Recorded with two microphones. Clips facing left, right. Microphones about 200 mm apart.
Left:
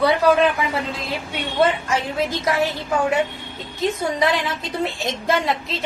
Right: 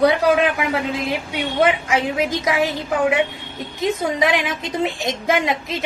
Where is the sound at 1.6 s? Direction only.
15° right (ahead or behind).